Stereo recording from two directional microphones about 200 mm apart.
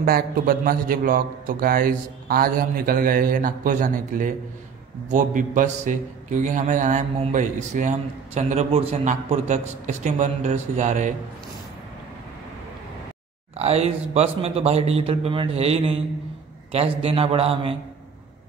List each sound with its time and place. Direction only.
0.0 s a man's voice: 45° right (ahead or behind)
13.6 s a man's voice: 30° right (ahead or behind)